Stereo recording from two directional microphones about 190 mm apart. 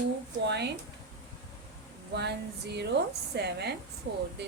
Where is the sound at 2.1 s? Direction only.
60° right (ahead or behind).